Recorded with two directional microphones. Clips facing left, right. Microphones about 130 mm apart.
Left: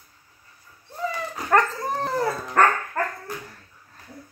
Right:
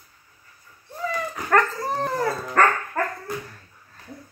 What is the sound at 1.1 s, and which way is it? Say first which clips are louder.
Dog: even; 20° left (ahead or behind).